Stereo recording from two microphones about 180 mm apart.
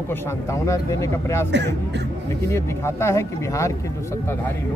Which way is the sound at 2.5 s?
15° left (ahead or behind).